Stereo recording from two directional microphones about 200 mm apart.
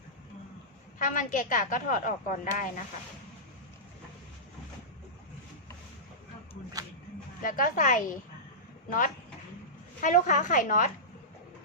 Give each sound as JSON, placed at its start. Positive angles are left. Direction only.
{"t": 0.9, "sound": "a woman's voice", "side_deg": 40}
{"t": 7.4, "sound": "a woman's voice", "side_deg": 45}
{"t": 10.0, "sound": "a woman's voice", "side_deg": 40}